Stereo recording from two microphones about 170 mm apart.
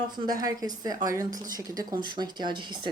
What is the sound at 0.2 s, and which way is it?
Speech, 20° right (ahead or behind).